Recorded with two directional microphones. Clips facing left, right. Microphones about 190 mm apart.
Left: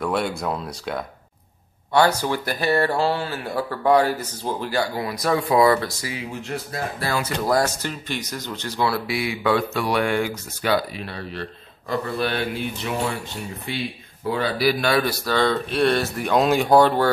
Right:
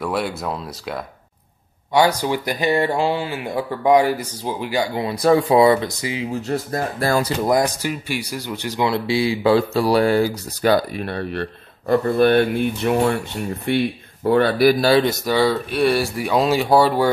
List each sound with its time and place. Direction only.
0.0 s speech: 5° right (ahead or behind)
2.0 s speech: 15° right (ahead or behind)
6.4 s speech: 40° right (ahead or behind)
7.4 s speech: 15° right (ahead or behind); by 14.8 s 55° right (ahead or behind)
14.8 s speech: 30° right (ahead or behind)
15.2 s speech: 10° right (ahead or behind)